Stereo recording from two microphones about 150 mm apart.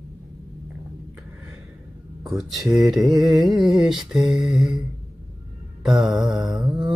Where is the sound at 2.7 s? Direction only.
5° right (ahead or behind).